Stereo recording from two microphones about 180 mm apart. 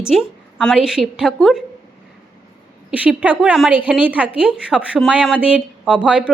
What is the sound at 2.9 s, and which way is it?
A woman's voice, 10° right (ahead or behind).